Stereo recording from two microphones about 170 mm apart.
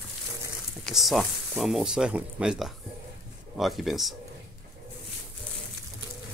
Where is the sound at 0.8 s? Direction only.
Centre (ahead or behind).